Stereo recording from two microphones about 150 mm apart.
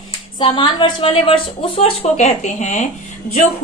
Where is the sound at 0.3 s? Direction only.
30° left (ahead or behind).